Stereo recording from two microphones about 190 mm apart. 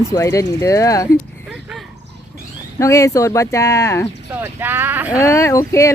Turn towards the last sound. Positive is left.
turn(degrees=15)  # may be behind; listen again after turning